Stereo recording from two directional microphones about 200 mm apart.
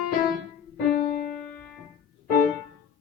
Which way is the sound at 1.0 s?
40° left (ahead or behind).